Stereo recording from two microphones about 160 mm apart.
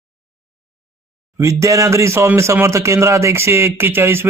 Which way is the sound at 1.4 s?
20° right (ahead or behind).